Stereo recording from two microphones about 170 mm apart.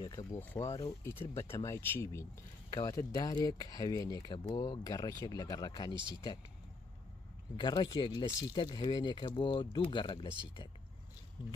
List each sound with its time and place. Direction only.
0.0 s speech: 20° left (ahead or behind)
7.5 s speech: 25° left (ahead or behind)